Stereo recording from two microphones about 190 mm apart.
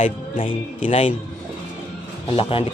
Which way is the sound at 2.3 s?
30° left (ahead or behind).